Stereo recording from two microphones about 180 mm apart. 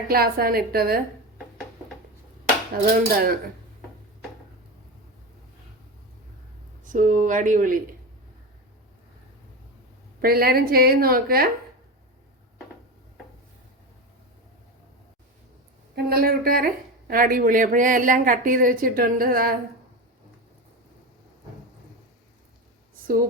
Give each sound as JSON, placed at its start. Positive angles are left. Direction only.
{"t": 0.1, "sound": "a woman's voice", "side_deg": -55}
{"t": 2.9, "sound": "a woman's voice", "side_deg": -55}
{"t": 6.8, "sound": "a woman's voice", "side_deg": -45}
{"t": 10.2, "sound": "a woman's voice", "side_deg": -55}
{"t": 16.0, "sound": "a woman's voice", "side_deg": -60}